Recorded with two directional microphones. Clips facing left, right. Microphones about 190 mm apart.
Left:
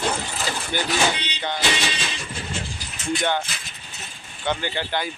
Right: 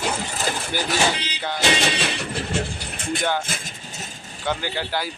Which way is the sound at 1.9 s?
65° right (ahead or behind).